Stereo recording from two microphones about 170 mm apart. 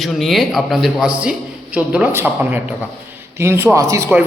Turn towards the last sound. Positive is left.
turn(degrees=-15)  # may be behind; listen again after turning